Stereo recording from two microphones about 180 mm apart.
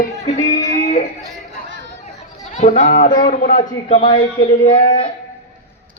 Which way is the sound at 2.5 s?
40° left (ahead or behind).